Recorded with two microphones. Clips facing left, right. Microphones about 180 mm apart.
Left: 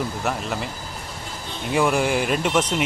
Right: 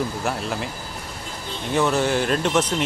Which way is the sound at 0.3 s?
Centre (ahead or behind).